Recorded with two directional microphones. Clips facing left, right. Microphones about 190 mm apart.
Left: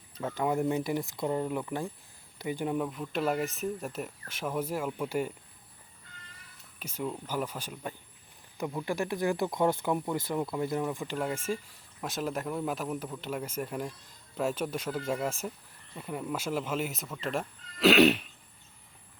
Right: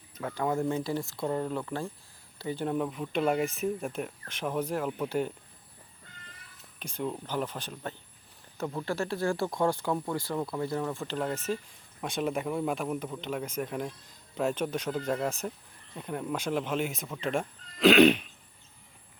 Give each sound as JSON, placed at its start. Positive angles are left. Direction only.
{"t": 0.3, "sound": "speech", "side_deg": 20}
{"t": 2.7, "sound": "speech", "side_deg": 0}
{"t": 6.7, "sound": "speech", "side_deg": 5}